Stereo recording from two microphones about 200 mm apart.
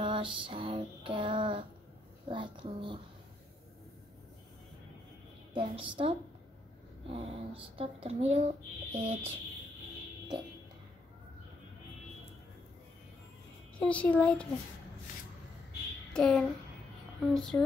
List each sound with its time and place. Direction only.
0.0 s female singing: 25° right (ahead or behind)
2.2 s a sound: 25° right (ahead or behind)
5.5 s a woman's voice: 25° right (ahead or behind)
13.7 s speech: 5° left (ahead or behind)
16.1 s speech: 5° left (ahead or behind)